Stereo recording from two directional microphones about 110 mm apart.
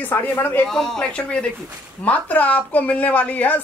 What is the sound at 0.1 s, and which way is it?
Speech, 20° left (ahead or behind).